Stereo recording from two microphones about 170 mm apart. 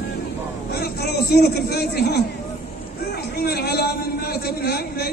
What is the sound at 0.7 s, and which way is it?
A man's voice, 70° left (ahead or behind).